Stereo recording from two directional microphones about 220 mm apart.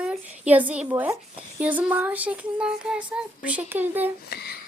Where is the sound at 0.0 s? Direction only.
5° right (ahead or behind).